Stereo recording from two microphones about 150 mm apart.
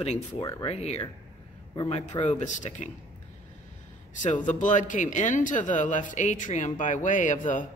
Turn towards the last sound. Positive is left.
turn(degrees=60)  # may be behind; listen again after turning